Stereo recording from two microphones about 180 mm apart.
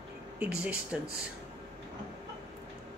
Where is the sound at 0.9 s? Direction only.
5° right (ahead or behind).